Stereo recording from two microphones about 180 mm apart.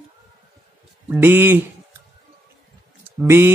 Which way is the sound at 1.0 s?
10° right (ahead or behind).